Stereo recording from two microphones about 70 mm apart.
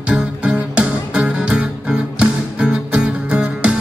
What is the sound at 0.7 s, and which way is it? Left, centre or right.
Music, centre.